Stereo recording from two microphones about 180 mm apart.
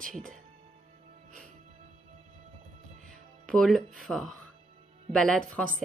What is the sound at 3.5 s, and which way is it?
Speech, centre (ahead or behind).